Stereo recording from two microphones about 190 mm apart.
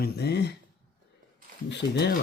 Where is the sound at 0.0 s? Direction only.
60° left (ahead or behind).